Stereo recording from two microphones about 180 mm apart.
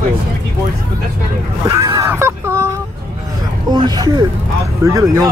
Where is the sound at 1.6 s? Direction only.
20° right (ahead or behind).